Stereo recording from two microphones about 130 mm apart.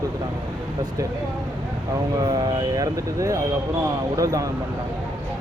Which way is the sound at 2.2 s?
30° right (ahead or behind).